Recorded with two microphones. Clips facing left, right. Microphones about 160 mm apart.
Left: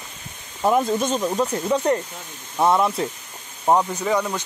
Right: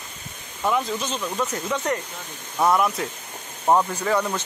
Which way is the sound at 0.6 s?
40° left (ahead or behind).